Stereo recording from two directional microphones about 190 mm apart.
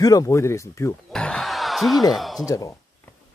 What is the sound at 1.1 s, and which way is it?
Speech, 5° left (ahead or behind).